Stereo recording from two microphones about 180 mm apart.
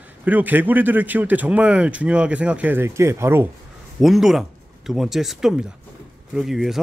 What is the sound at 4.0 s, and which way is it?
Speech, centre (ahead or behind).